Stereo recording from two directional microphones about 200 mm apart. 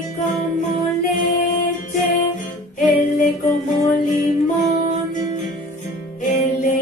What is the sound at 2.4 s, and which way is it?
Music, 40° left (ahead or behind).